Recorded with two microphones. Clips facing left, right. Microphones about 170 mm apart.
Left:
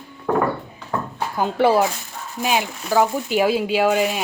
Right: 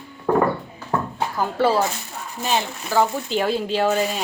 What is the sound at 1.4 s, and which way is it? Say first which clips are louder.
Speech: left 3 dB; 15° left (ahead or behind).